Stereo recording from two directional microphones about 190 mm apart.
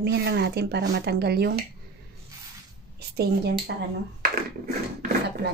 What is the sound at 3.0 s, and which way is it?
Speech, 60° right (ahead or behind).